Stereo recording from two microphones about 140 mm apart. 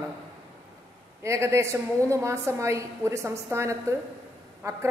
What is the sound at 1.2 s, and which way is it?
A woman's voice, 20° right (ahead or behind).